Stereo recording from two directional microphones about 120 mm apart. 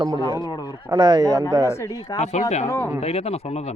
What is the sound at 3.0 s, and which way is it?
Speech, 60° left (ahead or behind).